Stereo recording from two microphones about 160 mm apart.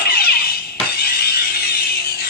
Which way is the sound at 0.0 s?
70° left (ahead or behind).